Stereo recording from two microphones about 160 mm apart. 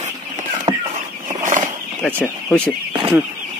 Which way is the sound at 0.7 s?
35° right (ahead or behind).